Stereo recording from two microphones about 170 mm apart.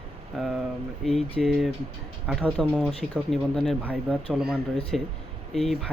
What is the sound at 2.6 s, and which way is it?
Speech, 5° left (ahead or behind).